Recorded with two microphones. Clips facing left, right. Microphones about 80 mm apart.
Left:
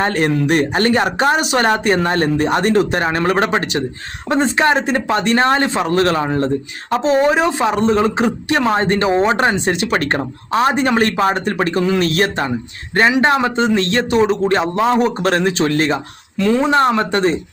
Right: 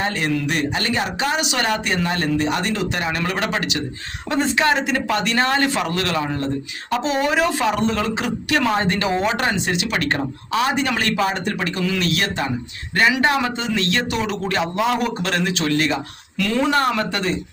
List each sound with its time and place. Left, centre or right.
0.0 s a man's voice: left
16.4 s speech: left